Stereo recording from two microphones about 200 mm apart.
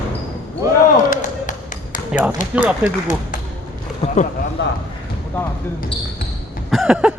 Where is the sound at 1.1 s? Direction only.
40° left (ahead or behind).